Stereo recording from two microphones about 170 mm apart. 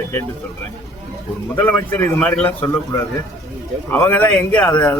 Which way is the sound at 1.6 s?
10° left (ahead or behind).